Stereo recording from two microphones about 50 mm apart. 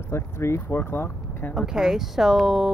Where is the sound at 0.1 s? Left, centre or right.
Left.